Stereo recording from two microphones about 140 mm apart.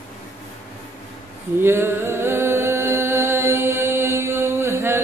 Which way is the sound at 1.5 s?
15° right (ahead or behind).